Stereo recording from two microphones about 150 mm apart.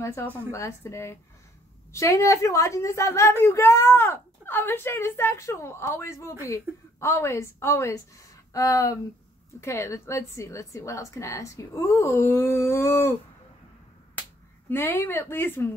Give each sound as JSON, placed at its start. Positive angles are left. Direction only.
{"t": 0.0, "sound": "a woman's voice", "side_deg": 20}
{"t": 14.7, "sound": "a woman's voice", "side_deg": 15}